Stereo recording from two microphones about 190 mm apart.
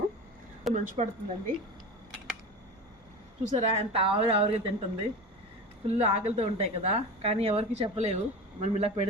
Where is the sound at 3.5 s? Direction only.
30° right (ahead or behind).